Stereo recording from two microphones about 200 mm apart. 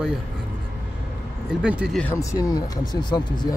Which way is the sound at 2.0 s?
10° left (ahead or behind).